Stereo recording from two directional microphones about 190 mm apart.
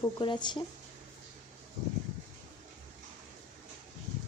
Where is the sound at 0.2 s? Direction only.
25° left (ahead or behind).